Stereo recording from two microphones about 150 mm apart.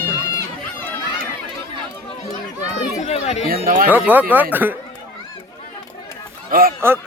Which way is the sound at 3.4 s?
80° right.